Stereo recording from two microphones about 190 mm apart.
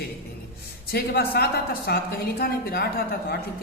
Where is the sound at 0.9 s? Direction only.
55° left (ahead or behind).